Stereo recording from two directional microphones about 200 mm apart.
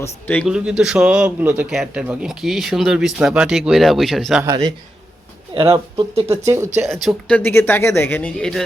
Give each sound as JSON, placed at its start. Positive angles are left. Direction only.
{"t": 0.0, "sound": "speech", "side_deg": 10}
{"t": 0.4, "sound": "a man's voice", "side_deg": -5}
{"t": 4.4, "sound": "speech", "side_deg": -20}
{"t": 6.8, "sound": "speech", "side_deg": 0}